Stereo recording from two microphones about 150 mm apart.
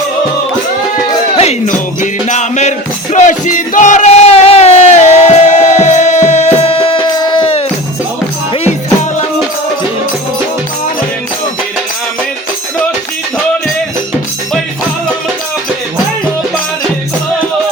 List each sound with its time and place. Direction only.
1.4 s music: 50° left (ahead or behind); by 7.5 s 30° left (ahead or behind)